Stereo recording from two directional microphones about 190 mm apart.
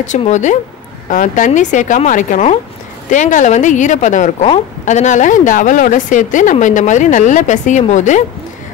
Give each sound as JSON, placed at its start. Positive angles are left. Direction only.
{"t": 0.0, "sound": "speech", "side_deg": 40}